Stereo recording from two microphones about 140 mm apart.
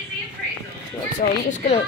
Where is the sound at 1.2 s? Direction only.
65° left (ahead or behind).